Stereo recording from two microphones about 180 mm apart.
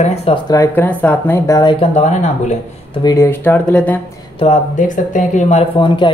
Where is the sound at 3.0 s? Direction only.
15° left (ahead or behind).